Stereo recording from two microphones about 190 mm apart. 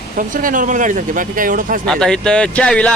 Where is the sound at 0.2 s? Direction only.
45° right (ahead or behind).